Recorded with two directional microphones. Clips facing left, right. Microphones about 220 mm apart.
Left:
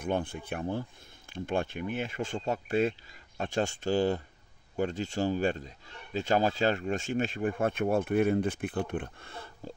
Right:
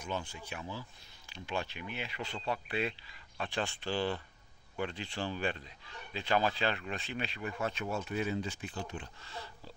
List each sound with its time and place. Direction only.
0.0 s speech: 55° left (ahead or behind)